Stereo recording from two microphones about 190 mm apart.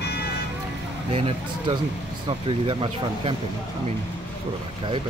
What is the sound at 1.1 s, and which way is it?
Speech, 30° right (ahead or behind).